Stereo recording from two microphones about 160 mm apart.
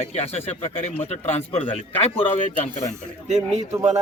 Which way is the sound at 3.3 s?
45° right (ahead or behind).